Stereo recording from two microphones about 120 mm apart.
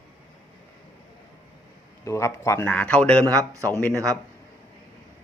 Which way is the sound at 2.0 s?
25° left (ahead or behind).